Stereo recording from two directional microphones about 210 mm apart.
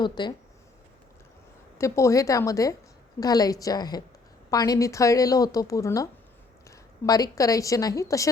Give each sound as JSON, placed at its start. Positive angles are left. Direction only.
{"t": 0.0, "sound": "speech", "side_deg": 20}
{"t": 1.8, "sound": "a woman's voice", "side_deg": 15}